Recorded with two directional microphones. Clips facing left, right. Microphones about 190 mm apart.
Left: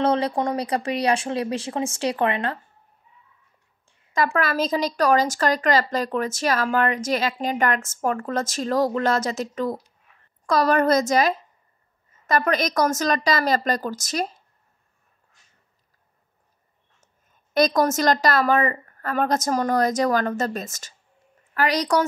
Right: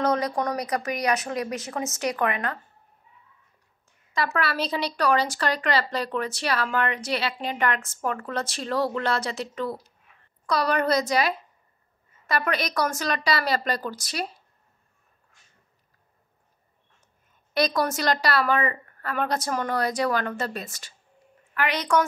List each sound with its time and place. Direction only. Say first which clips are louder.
0.0 s speech: left 3 dB; 30° left (ahead or behind)
4.4 s speech: left 4 dB; 45° left (ahead or behind)
17.6 s a woman's voice: left 5 dB; 45° left (ahead or behind)